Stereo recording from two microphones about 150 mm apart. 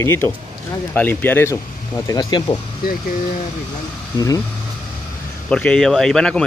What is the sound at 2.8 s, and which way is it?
Speech, 80° left.